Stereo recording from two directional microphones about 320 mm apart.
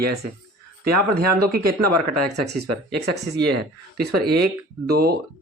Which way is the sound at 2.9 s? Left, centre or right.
Right.